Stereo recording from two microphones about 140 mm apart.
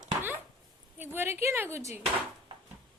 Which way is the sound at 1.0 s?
15° right (ahead or behind).